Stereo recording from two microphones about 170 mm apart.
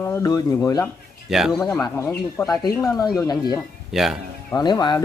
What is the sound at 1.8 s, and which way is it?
Speech, 15° left (ahead or behind).